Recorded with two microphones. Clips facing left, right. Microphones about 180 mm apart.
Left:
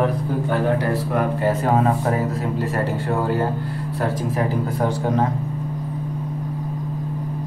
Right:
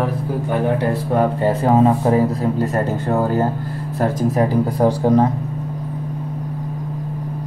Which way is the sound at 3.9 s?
35° right (ahead or behind).